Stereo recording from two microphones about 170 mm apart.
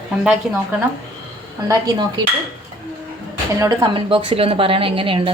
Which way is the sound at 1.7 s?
25° right (ahead or behind).